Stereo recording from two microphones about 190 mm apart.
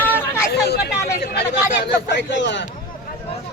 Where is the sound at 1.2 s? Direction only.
55° left (ahead or behind).